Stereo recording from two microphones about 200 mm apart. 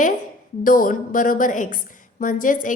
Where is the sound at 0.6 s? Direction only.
45° left (ahead or behind).